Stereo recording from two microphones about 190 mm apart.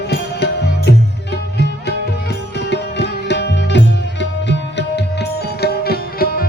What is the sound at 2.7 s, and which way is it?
Music, 65° left (ahead or behind).